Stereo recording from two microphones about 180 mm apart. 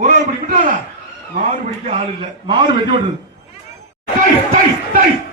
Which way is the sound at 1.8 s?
30° right (ahead or behind).